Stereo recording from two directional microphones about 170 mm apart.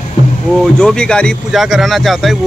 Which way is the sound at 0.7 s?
5° left (ahead or behind).